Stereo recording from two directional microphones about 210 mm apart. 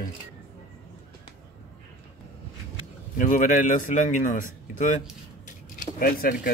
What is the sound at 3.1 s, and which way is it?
Speech, 40° left (ahead or behind).